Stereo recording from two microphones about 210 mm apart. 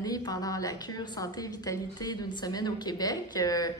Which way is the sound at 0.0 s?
20° left (ahead or behind).